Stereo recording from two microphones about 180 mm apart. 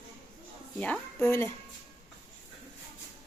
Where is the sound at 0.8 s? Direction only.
10° left (ahead or behind).